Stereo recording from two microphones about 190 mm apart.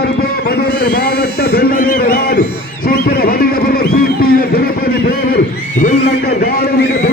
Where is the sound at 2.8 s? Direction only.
55° left (ahead or behind).